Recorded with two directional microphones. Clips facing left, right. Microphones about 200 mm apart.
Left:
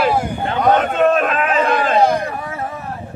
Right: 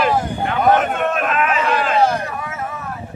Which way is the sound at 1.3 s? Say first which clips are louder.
Left 2 dB; 35° left (ahead or behind).